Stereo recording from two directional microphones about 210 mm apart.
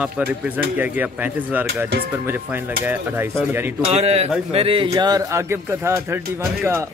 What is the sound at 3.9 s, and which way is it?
A man's voice, 30° right (ahead or behind).